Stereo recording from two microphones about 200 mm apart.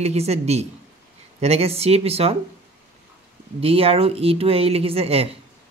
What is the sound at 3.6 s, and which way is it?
Speech, 30° right (ahead or behind).